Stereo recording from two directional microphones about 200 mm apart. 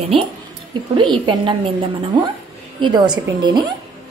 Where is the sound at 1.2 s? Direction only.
25° right (ahead or behind).